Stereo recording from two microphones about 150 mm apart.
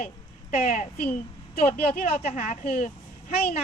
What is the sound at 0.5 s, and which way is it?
Speech, 50° left (ahead or behind).